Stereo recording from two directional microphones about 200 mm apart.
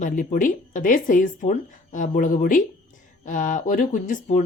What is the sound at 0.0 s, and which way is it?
Speech, 40° left (ahead or behind).